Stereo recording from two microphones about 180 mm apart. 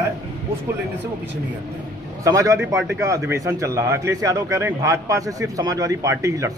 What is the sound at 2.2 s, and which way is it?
Speech, 20° right (ahead or behind).